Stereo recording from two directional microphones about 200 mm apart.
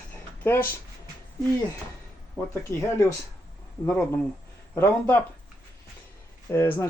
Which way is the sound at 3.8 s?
5° left (ahead or behind).